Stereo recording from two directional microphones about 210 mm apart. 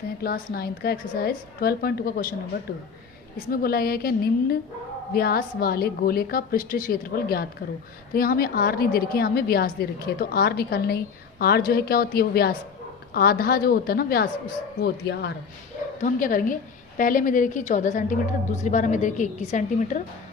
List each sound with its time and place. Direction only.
0.2 s a woman's voice: 45° left (ahead or behind)
3.5 s a woman's voice: 45° left (ahead or behind)
16.0 s a woman's voice: 40° left (ahead or behind)